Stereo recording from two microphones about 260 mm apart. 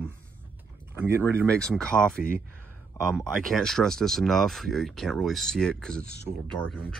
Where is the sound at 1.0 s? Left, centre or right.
Centre.